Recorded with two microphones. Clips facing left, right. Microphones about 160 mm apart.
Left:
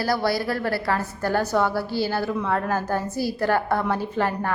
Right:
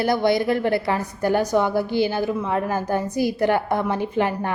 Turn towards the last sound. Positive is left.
turn(degrees=-15)  # may be behind; listen again after turning